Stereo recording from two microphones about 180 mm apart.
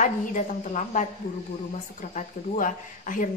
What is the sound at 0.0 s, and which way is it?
A woman's voice, 45° left (ahead or behind).